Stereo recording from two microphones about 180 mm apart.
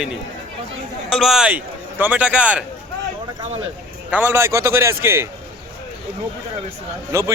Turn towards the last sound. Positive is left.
turn(degrees=-15)  # may be behind; listen again after turning